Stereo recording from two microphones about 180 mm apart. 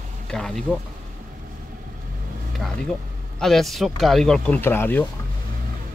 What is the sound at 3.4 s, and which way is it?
Speech, centre (ahead or behind).